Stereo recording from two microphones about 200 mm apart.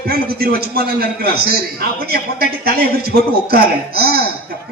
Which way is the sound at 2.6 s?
50° right (ahead or behind).